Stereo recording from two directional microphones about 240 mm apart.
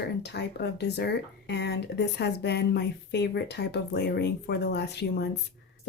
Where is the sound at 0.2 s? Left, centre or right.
Left.